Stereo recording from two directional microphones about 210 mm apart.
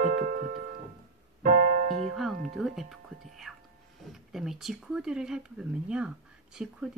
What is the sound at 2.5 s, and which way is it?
Music, centre (ahead or behind).